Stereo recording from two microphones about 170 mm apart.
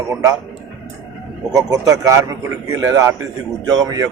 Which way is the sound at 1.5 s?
20° right (ahead or behind).